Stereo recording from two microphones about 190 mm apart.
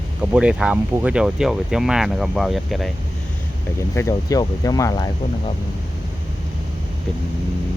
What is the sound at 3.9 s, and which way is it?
Speech, 15° left (ahead or behind).